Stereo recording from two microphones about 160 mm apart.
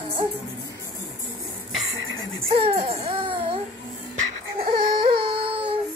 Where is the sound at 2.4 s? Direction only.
40° right (ahead or behind).